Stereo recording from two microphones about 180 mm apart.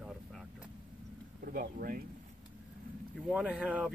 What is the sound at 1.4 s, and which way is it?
Speech, 55° right (ahead or behind).